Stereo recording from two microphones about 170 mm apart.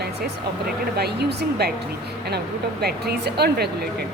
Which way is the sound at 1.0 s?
70° right (ahead or behind).